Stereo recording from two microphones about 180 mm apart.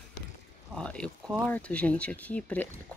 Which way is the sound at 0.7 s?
5° left (ahead or behind).